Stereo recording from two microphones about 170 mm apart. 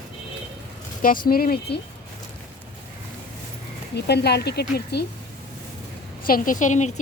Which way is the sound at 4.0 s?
75° left (ahead or behind).